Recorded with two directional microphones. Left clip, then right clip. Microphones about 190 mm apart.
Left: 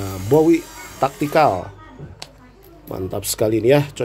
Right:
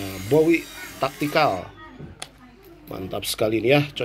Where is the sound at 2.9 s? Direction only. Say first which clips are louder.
Left 3 dB; 30° left (ahead or behind).